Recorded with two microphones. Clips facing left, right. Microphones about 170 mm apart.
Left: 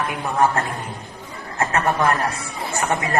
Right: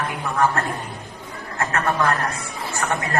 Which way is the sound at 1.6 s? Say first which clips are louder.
Left 2 dB; 20° left (ahead or behind).